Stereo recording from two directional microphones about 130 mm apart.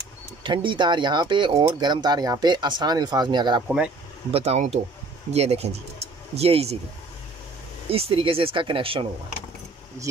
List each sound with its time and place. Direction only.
0.4 s speech: 40° right (ahead or behind)
3.6 s speech: 10° right (ahead or behind)
4.3 s speech: 50° right (ahead or behind)
7.9 s speech: 45° right (ahead or behind)